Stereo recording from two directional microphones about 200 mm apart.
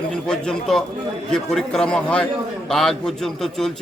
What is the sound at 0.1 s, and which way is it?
A man's voice, 5° left (ahead or behind).